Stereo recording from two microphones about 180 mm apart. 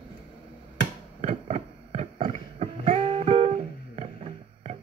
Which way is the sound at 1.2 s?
35° right (ahead or behind).